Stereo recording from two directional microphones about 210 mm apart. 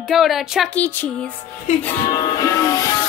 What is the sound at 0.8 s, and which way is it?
Music, 10° left (ahead or behind).